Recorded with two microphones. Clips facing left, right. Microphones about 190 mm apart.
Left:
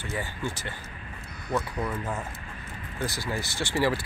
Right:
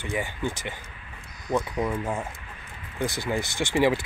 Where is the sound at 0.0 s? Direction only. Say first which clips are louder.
Right 3 dB; 20° right (ahead or behind).